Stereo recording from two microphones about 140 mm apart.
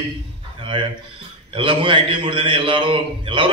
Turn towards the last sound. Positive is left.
turn(degrees=-40)  # may be behind; listen again after turning